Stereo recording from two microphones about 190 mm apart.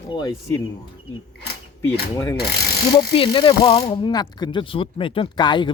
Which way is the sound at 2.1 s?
15° left (ahead or behind).